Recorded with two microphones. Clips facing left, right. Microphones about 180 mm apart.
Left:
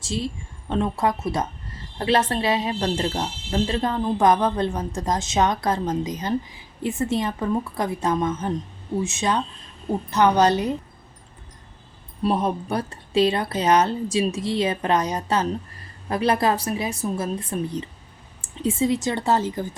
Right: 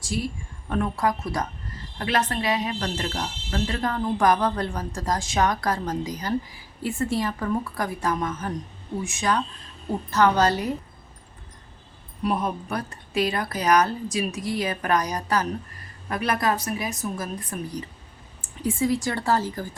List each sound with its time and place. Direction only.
0.0 s a woman's voice: 25° left (ahead or behind)
12.2 s speech: 30° left (ahead or behind)